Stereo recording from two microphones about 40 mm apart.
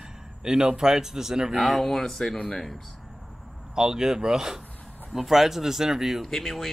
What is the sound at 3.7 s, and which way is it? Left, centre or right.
Speech, centre.